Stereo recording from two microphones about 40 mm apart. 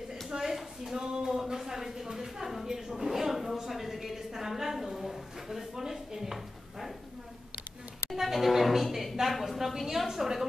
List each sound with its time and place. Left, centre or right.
0.3 s a sound: centre
1.4 s a woman's voice: centre
8.1 s a woman's voice: centre